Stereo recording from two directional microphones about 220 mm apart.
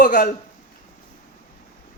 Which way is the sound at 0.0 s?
35° left (ahead or behind).